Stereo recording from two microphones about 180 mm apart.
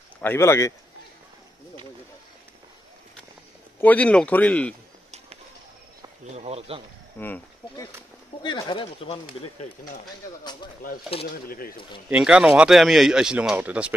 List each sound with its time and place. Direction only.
0.2 s speech: 15° left (ahead or behind)
3.8 s speech: 5° left (ahead or behind)
6.3 s speech: 35° right (ahead or behind)
7.2 s speech: 10° left (ahead or behind)
8.4 s speech: 25° left (ahead or behind)
11.4 s speech: 55° left (ahead or behind)
12.1 s speech: 5° right (ahead or behind)